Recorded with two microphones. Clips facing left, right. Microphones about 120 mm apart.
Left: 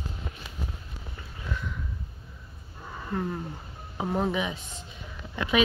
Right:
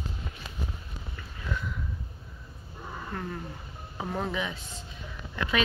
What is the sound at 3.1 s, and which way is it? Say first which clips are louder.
Speech: left 7 dB; 10° left (ahead or behind).